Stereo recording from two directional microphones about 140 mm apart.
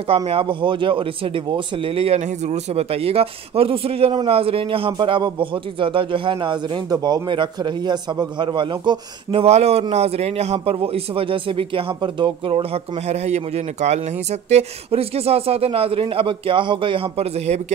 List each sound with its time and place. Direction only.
0.1 s speech: 40° right (ahead or behind)
2.2 s a man's voice: 55° right (ahead or behind)